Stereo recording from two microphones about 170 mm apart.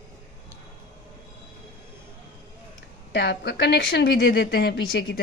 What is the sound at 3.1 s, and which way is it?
Speech, 90° left.